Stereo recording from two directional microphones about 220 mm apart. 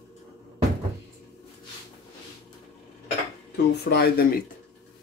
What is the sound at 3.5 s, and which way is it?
Speech, 50° left (ahead or behind).